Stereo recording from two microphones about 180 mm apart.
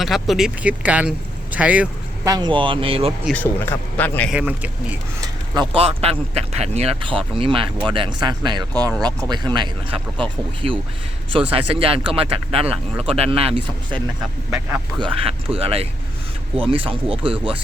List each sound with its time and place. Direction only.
0.0 s speech: centre (ahead or behind)
2.2 s speech: 20° right (ahead or behind)
3.2 s speech: 10° left (ahead or behind)
4.3 s speech: 10° right (ahead or behind)
5.2 s speech: 25° right (ahead or behind)